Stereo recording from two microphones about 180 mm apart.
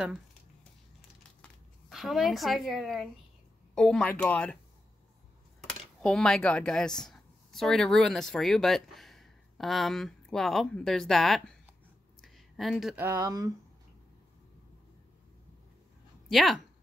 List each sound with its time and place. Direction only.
1.4 s speech: centre (ahead or behind)
5.6 s speech: centre (ahead or behind)
12.2 s a sound: centre (ahead or behind)
13.0 s speech: 15° right (ahead or behind)
16.3 s speech: centre (ahead or behind)